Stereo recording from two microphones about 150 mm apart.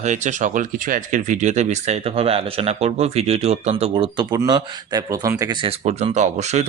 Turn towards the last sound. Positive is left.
turn(degrees=-50)  # may be behind; listen again after turning